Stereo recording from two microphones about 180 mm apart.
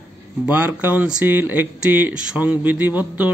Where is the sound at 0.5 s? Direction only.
10° right (ahead or behind).